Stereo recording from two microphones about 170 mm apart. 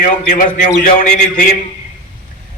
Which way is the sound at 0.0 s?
50° left (ahead or behind).